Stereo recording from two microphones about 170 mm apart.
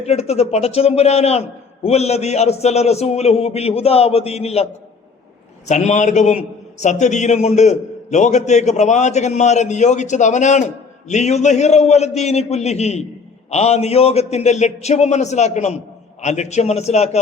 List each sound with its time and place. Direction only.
0.0 s a man's voice: 40° left (ahead or behind)